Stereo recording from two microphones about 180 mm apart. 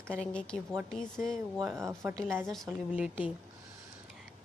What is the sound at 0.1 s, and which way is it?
Speech, 5° left (ahead or behind).